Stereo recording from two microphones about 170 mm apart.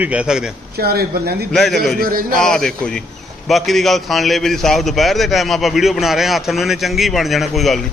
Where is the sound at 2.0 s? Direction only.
55° right (ahead or behind).